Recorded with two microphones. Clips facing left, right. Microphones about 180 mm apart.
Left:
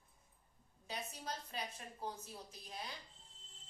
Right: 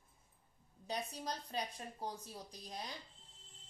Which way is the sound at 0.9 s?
35° right (ahead or behind).